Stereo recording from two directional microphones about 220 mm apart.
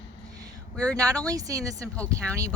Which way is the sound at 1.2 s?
15° right (ahead or behind).